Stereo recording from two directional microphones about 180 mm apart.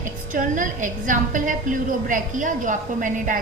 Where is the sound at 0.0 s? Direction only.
45° right (ahead or behind).